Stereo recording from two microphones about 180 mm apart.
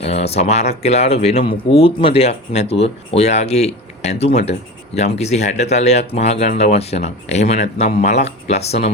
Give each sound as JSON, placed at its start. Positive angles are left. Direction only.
{"t": 0.0, "sound": "speech", "side_deg": 35}